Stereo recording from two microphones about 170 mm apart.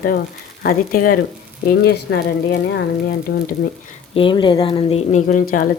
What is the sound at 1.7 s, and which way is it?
Speech, 65° left (ahead or behind).